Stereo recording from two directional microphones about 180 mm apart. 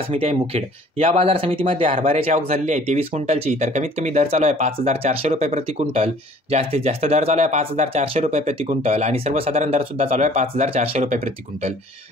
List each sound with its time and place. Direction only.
0.1 s speech: 35° right (ahead or behind)